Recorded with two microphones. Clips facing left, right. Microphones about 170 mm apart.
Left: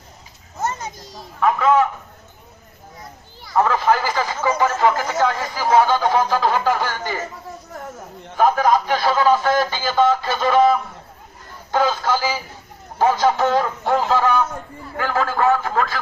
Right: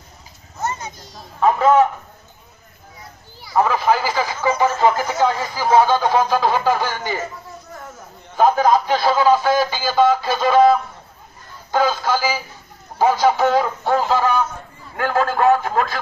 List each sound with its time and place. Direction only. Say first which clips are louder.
1.4 s a man's voice: right 2 dB; 30° right (ahead or behind)
3.4 s speech: even; 5° right (ahead or behind)
8.4 s speech: right 1 dB; 15° right (ahead or behind)
11.7 s speech: right 1 dB; 5° right (ahead or behind)